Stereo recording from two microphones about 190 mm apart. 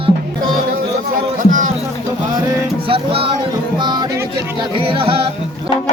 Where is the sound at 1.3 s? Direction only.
40° right (ahead or behind).